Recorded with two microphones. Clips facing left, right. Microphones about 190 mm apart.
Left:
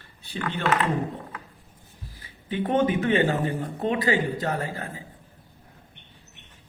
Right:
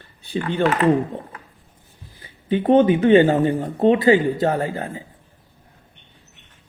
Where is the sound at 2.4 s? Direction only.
30° right (ahead or behind).